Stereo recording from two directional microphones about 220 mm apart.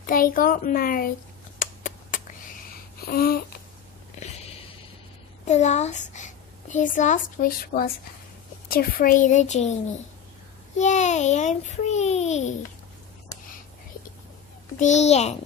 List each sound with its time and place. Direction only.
0.0 s a child's voice: 40° left (ahead or behind)
1.6 s a sound: 40° left (ahead or behind)
5.4 s a child's voice: 30° left (ahead or behind)
10.8 s a child's voice: 30° left (ahead or behind)
14.8 s a child's voice: 30° left (ahead or behind)